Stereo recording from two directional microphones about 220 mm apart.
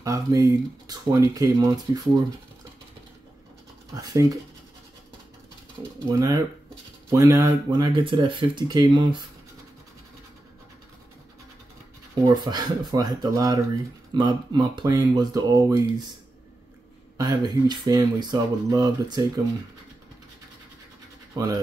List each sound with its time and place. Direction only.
0.0 s speech: 15° right (ahead or behind)
3.9 s speech: 15° right (ahead or behind)
5.8 s speech: 15° right (ahead or behind)
12.3 s speech: 15° right (ahead or behind)
17.2 s speech: 20° right (ahead or behind)